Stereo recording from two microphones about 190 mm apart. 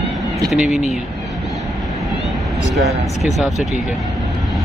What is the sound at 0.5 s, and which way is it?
Speech, 5° right (ahead or behind).